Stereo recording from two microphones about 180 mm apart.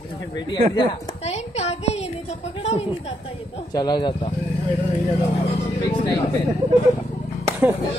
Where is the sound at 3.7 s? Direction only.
25° left (ahead or behind).